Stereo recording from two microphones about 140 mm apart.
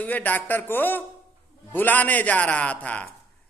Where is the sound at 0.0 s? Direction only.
10° left (ahead or behind).